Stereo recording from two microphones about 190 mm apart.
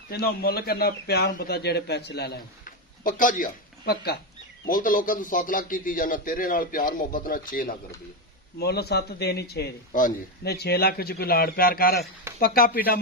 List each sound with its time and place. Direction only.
0.1 s a man's voice: 55° left (ahead or behind)
4.6 s a man's voice: 45° left (ahead or behind)
8.5 s a man's voice: 60° left (ahead or behind)